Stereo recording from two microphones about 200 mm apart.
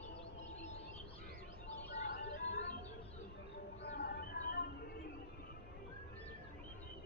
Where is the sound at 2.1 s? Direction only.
55° left (ahead or behind).